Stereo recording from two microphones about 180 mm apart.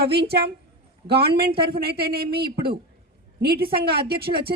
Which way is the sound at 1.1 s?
65° right (ahead or behind).